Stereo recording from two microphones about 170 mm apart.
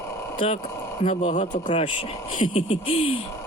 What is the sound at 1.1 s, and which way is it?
Speech, 45° left (ahead or behind).